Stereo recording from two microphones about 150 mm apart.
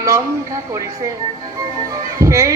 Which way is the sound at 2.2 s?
20° right (ahead or behind).